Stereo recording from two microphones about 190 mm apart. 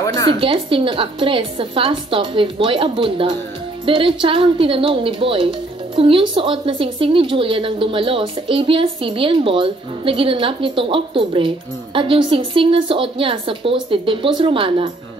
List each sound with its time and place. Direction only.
0.4 s a woman's voice: 30° right (ahead or behind)